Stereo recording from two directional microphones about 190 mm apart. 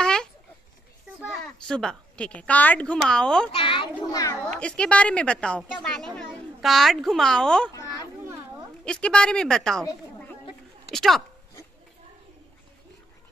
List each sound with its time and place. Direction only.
0.0 s a sound: 5° left (ahead or behind)
1.3 s a woman's voice: 5° left (ahead or behind)
3.5 s children playing: 25° left (ahead or behind)
4.1 s a child's voice: 20° left (ahead or behind)
4.6 s a woman's voice: 5° left (ahead or behind)
8.8 s a woman's voice: 5° left (ahead or behind)
10.9 s a woman's voice: centre (ahead or behind)